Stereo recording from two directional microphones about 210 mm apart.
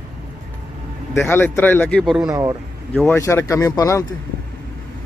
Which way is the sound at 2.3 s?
15° right (ahead or behind).